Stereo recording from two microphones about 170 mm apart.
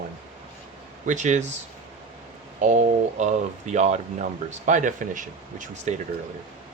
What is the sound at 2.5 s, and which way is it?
Speech, 50° right (ahead or behind).